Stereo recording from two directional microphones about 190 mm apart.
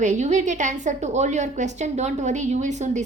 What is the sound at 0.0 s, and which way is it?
A woman's voice, 40° right (ahead or behind).